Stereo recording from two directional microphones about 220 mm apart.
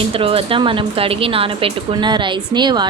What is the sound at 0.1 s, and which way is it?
Speech, 25° right (ahead or behind).